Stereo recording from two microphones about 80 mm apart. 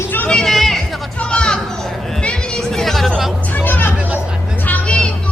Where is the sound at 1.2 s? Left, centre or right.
Centre.